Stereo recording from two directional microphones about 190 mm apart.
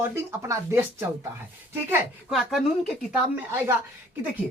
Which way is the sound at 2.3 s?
Centre (ahead or behind).